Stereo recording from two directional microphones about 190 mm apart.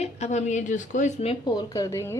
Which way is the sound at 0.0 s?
35° left (ahead or behind).